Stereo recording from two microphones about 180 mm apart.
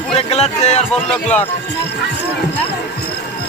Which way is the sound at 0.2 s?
35° left (ahead or behind).